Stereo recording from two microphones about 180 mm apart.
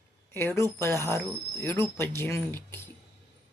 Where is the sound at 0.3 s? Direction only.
15° left (ahead or behind).